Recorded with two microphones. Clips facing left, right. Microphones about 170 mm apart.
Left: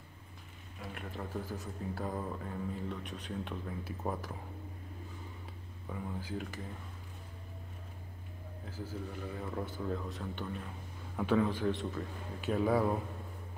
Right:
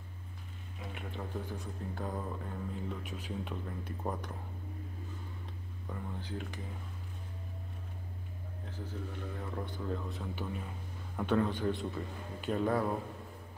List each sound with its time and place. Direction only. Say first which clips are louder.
0.7 s speech: even; centre (ahead or behind)
5.9 s speech: left 2 dB; 5° left (ahead or behind)
8.6 s speech: left 1 dB; 5° left (ahead or behind)